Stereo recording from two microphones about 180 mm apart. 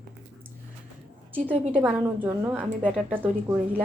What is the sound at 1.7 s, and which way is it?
A woman's voice, 10° right (ahead or behind).